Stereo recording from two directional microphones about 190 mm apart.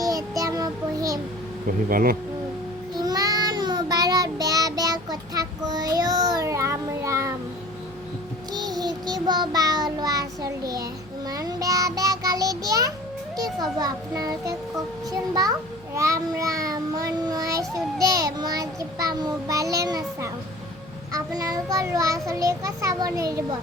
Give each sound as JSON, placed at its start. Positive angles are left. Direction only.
{"t": 0.0, "sound": "child singing", "side_deg": -20}
{"t": 1.6, "sound": "speech", "side_deg": -50}
{"t": 3.0, "sound": "child singing", "side_deg": -20}
{"t": 8.5, "sound": "child singing", "side_deg": -20}
{"t": 13.3, "sound": "a child's voice", "side_deg": -20}
{"t": 16.0, "sound": "child singing", "side_deg": -15}
{"t": 18.0, "sound": "a child's voice", "side_deg": -20}